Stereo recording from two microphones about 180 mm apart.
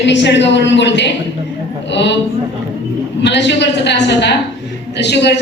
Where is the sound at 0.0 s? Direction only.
75° left (ahead or behind).